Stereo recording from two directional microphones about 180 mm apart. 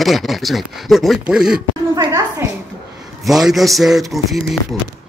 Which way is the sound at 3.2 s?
Centre (ahead or behind).